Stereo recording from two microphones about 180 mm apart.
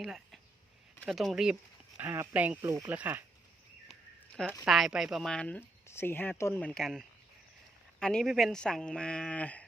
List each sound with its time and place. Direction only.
0.0 s speech: centre (ahead or behind)
2.6 s speech: 20° right (ahead or behind)
4.6 s speech: 5° right (ahead or behind)